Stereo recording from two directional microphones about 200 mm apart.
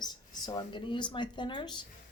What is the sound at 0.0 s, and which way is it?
Speech, 20° left (ahead or behind).